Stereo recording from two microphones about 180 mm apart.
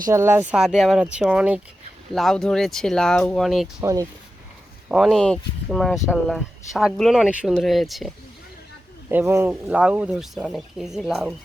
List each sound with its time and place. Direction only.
0.1 s speech: 15° right (ahead or behind)
0.5 s speech: 5° right (ahead or behind)
3.8 s speech: 20° right (ahead or behind)
4.9 s speech: centre (ahead or behind)
9.0 s speech: 15° right (ahead or behind)